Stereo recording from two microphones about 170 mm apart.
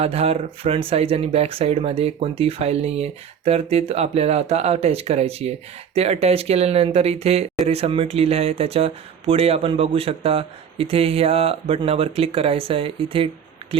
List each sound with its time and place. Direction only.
0.0 s speech: 35° right (ahead or behind)